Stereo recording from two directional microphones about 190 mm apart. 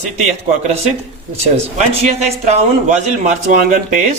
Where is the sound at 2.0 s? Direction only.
35° right (ahead or behind).